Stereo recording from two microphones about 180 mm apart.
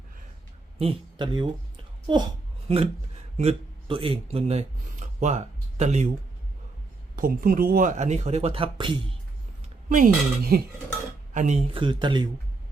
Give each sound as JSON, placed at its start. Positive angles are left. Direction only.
{"t": 0.8, "sound": "speech", "side_deg": -30}
{"t": 7.2, "sound": "speech", "side_deg": -55}
{"t": 9.9, "sound": "speech", "side_deg": -50}
{"t": 11.3, "sound": "speech", "side_deg": -40}